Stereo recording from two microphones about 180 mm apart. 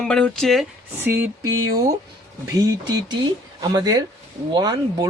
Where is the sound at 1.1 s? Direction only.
15° right (ahead or behind).